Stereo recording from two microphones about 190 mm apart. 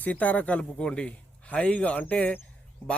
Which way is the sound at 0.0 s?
10° left (ahead or behind).